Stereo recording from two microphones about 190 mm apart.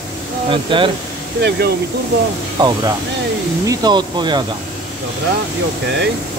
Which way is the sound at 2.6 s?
25° right (ahead or behind).